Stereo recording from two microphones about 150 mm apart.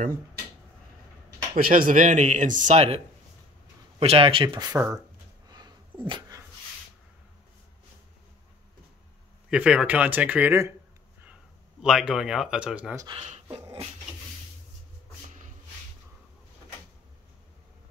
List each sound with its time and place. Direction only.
1.5 s speech: 70° right (ahead or behind); by 3.0 s 50° right (ahead or behind)
4.0 s speech: 40° right (ahead or behind); by 4.9 s 20° right (ahead or behind)
5.5 s dog: 30° right (ahead or behind)
9.5 s speech: 5° right (ahead or behind)
11.8 s speech: 5° right (ahead or behind)
12.9 s speech: 25° right (ahead or behind)
13.2 s speech: 45° right (ahead or behind)